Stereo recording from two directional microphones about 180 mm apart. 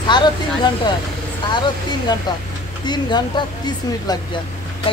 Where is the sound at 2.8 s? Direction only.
25° left (ahead or behind).